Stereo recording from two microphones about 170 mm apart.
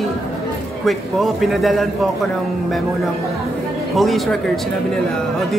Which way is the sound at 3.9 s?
Centre (ahead or behind).